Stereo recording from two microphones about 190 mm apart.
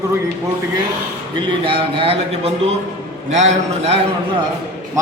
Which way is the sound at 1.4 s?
25° right (ahead or behind).